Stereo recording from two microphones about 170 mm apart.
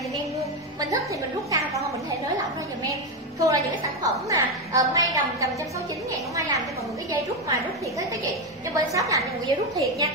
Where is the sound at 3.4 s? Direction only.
20° right (ahead or behind).